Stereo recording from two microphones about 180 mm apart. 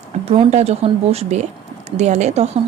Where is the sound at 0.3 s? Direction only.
35° right (ahead or behind).